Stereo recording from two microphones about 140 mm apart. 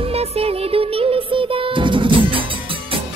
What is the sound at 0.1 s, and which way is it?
Music, 45° right (ahead or behind).